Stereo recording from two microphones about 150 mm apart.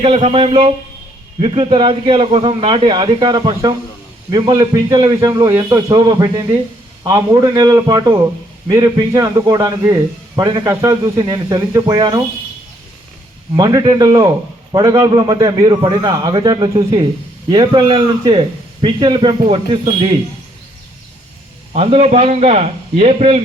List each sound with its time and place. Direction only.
0.0 s a man's voice: 40° right (ahead or behind); by 12.0 s 25° right (ahead or behind)
13.6 s a man's voice: 25° right (ahead or behind)
21.7 s a man's voice: 45° right (ahead or behind)